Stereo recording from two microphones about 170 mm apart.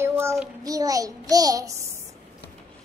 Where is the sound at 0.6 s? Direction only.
20° right (ahead or behind).